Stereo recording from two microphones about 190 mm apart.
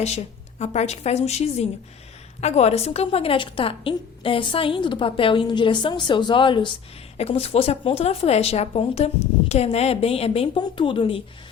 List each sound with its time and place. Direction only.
0.0 s a woman's voice: 35° left (ahead or behind)